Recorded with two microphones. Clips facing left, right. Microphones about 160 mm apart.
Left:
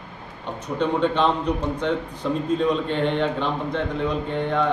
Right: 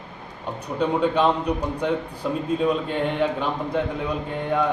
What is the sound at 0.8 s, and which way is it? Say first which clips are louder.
A man's voice: even; 10° right (ahead or behind).